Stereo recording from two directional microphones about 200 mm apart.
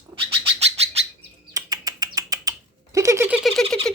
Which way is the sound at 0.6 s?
30° right (ahead or behind).